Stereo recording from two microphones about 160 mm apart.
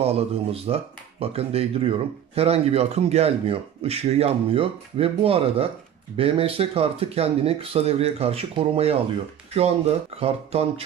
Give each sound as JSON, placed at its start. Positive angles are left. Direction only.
{"t": 0.0, "sound": "speech", "side_deg": -40}